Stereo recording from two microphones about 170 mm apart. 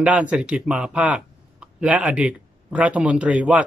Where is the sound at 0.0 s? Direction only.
10° right (ahead or behind).